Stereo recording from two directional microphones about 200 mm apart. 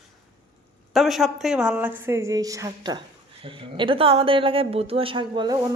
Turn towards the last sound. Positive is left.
turn(degrees=-20)  # may be behind; listen again after turning